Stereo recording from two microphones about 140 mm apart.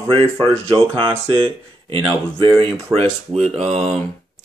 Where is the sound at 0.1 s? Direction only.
40° right (ahead or behind).